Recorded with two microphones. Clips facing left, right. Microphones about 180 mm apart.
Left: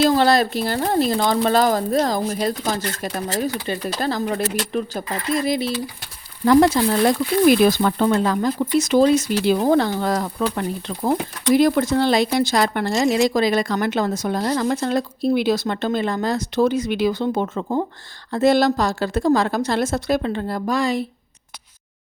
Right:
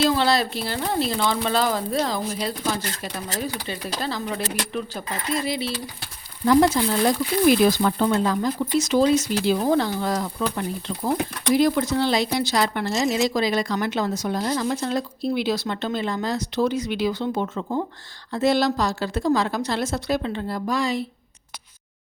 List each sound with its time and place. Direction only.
0.0 s speech: 45° left (ahead or behind)
6.4 s speech: 65° left (ahead or behind)
12.8 s speech: centre (ahead or behind)
13.2 s speech: 50° left (ahead or behind)